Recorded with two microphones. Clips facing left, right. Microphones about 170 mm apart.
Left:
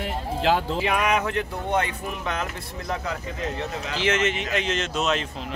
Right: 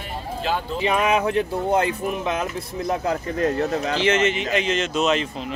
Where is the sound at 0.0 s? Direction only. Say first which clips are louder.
Left 3 dB; 90° left.